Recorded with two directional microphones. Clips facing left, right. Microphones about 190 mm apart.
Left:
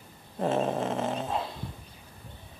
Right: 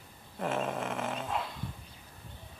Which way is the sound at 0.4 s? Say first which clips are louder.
Left 6 dB; 30° left (ahead or behind).